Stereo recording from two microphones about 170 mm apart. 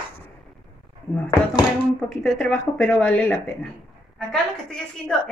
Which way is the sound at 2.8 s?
5° left (ahead or behind).